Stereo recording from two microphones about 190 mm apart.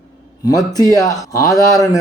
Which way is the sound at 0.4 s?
20° left (ahead or behind).